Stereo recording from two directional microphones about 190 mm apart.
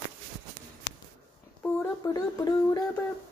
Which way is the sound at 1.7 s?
20° left (ahead or behind).